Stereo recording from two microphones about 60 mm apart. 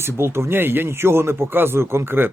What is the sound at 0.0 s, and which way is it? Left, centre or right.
A man's voice, right.